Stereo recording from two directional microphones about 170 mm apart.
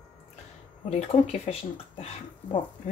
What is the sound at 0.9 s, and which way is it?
Speech, 40° left (ahead or behind).